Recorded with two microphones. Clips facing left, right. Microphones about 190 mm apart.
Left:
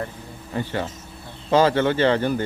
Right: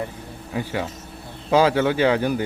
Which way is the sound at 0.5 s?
5° right (ahead or behind).